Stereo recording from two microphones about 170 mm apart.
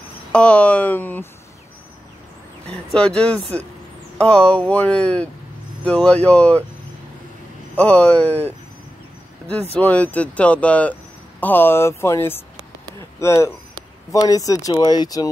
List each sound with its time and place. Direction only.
0.3 s speech: 5° left (ahead or behind)
2.6 s speech: 5° left (ahead or behind)
7.7 s speech: 10° left (ahead or behind)
9.8 s speech: 10° left (ahead or behind)